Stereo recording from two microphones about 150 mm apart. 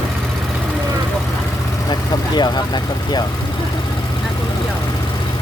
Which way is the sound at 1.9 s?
30° left (ahead or behind).